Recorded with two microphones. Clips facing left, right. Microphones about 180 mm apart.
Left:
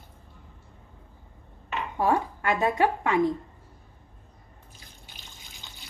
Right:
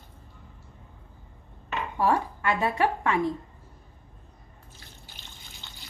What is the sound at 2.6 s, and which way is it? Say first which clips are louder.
Speech: left 2 dB; 20° left (ahead or behind).